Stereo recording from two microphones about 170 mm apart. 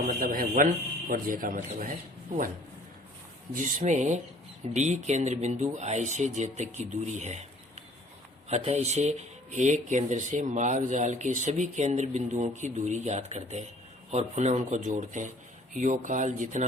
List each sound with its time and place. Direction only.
0.1 s speech: 55° right (ahead or behind)
3.5 s speech: 45° right (ahead or behind)
8.4 s speech: 40° right (ahead or behind)